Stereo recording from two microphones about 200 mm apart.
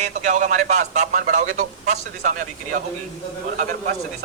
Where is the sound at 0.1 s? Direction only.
40° right (ahead or behind).